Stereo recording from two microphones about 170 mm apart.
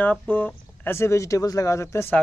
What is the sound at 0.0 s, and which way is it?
Speech, 10° left (ahead or behind).